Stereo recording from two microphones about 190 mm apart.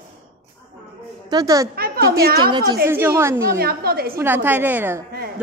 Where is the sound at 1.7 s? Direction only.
55° right (ahead or behind).